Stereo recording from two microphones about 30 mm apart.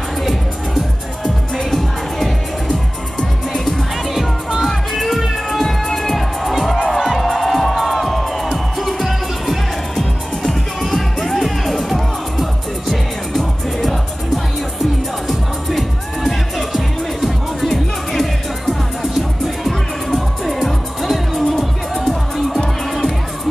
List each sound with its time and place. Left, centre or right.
1.2 s music: centre
4.6 s music: centre
7.3 s music: centre
10.9 s music: centre
19.4 s music: centre
21.9 s music: centre